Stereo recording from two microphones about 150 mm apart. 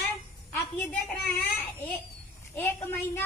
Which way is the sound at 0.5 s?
10° left (ahead or behind).